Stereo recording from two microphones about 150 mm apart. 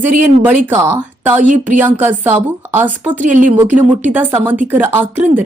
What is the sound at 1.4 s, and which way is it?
Speech, 55° right (ahead or behind).